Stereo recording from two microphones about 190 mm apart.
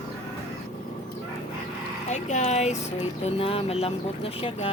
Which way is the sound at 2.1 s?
40° left (ahead or behind).